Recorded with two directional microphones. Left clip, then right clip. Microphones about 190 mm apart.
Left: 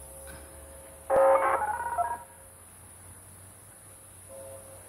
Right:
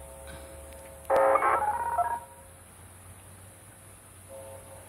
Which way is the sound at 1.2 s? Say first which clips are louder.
Left 1 dB; 25° left (ahead or behind).